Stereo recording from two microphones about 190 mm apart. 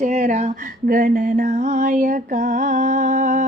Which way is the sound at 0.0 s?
40° right (ahead or behind).